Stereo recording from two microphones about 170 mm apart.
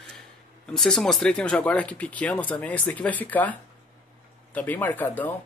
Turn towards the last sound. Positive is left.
turn(degrees=10)  # may be behind; listen again after turning